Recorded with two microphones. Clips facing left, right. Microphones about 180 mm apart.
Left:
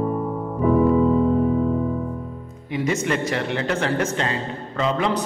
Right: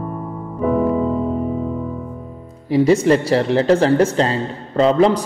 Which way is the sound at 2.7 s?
35° right (ahead or behind).